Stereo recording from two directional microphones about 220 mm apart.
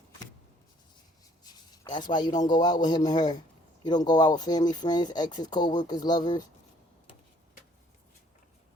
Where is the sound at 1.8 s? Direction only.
20° left (ahead or behind).